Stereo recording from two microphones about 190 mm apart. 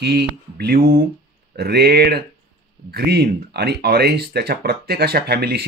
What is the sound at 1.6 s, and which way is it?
Speech, 55° right (ahead or behind).